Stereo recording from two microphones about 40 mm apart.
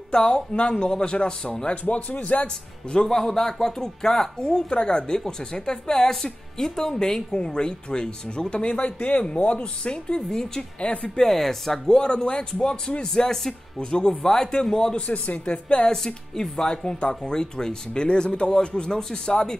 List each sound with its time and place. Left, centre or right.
0.1 s speech: left
1.9 s a woman's voice: left
2.4 s speech: centre
10.8 s speech: left
11.1 s speech: centre
12.0 s speech: left
15.0 s a woman's voice: left
15.9 s speech: centre